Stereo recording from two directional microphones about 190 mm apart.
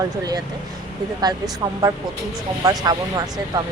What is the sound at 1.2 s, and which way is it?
Speech, 20° right (ahead or behind).